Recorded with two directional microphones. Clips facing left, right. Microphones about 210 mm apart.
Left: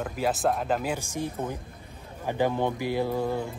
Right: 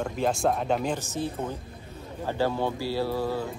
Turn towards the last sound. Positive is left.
turn(degrees=20)  # may be behind; listen again after turning